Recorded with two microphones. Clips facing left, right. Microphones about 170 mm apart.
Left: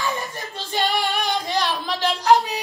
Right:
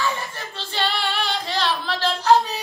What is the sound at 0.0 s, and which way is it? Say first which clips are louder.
Female singing: even; 15° left (ahead or behind).